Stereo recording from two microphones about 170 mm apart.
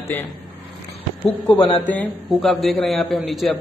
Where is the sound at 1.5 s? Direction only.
25° left (ahead or behind).